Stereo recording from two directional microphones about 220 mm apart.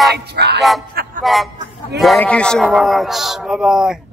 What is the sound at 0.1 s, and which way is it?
Music, 50° right (ahead or behind).